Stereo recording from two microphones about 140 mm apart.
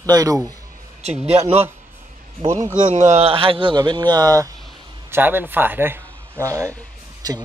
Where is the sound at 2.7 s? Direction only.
55° right (ahead or behind); by 4.5 s 25° right (ahead or behind).